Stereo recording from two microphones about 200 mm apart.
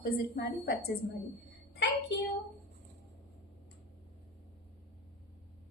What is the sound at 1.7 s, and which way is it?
Child singing, 60° left (ahead or behind).